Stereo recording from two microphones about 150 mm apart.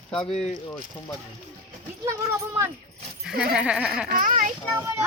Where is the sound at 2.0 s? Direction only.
20° right (ahead or behind).